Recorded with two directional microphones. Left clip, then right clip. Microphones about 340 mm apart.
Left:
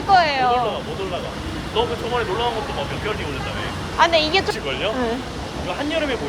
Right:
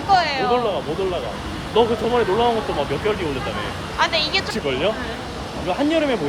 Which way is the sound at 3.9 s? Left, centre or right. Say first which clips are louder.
Left 3 dB; centre.